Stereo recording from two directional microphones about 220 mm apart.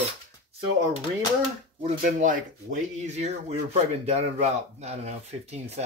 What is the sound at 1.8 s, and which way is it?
Speech, 35° right (ahead or behind).